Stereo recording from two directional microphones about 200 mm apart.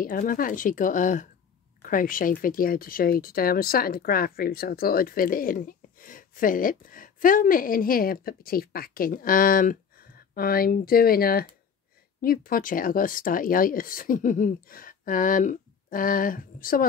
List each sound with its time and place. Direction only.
0.0 s speech: 45° left (ahead or behind)